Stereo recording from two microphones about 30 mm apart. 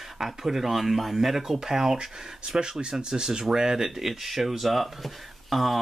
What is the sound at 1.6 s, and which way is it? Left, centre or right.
Speech, centre.